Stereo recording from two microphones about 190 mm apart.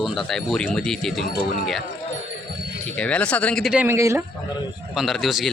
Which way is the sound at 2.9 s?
5° left (ahead or behind).